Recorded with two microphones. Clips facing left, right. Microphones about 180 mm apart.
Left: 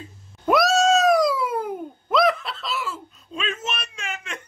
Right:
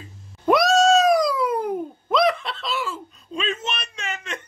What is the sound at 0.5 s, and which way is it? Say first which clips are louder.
Cat: right 2 dB; 5° left (ahead or behind).